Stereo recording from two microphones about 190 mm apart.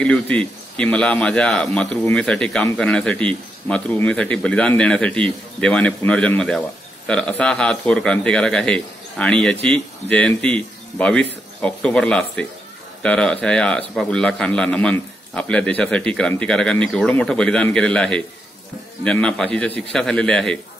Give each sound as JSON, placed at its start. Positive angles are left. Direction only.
{"t": 0.0, "sound": "speech", "side_deg": 5}